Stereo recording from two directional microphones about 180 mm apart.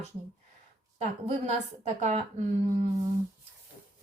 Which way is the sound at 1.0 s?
35° right (ahead or behind).